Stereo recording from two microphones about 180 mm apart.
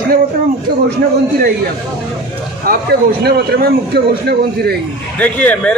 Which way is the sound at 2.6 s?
60° right (ahead or behind).